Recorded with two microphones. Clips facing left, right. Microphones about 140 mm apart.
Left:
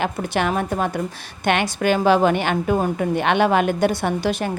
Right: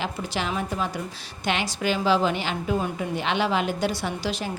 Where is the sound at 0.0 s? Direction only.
60° left (ahead or behind).